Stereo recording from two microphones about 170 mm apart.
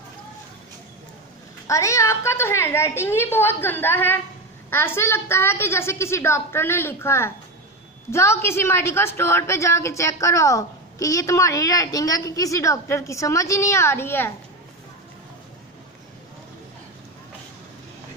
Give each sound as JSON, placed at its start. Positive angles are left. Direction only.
{"t": 1.7, "sound": "a woman's voice", "side_deg": 20}